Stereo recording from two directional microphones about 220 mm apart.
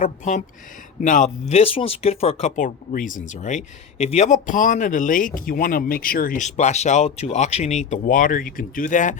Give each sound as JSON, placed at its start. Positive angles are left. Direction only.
{"t": 0.0, "sound": "speech", "side_deg": 35}